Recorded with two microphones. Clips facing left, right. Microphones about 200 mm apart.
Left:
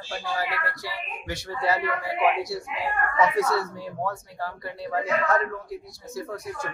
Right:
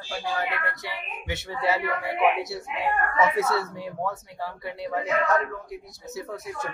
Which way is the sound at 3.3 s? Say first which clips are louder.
Left 1 dB; 25° right (ahead or behind).